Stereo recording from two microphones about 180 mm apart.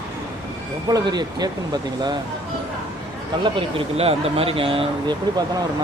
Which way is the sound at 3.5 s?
35° right (ahead or behind).